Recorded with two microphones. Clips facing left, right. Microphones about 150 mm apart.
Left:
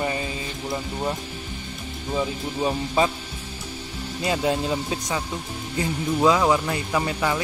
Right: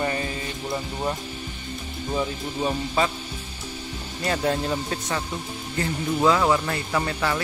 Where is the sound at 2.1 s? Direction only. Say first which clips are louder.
Left 1 dB; 5° left (ahead or behind).